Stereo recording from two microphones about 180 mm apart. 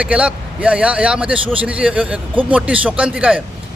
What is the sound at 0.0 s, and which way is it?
Speech, 5° right (ahead or behind).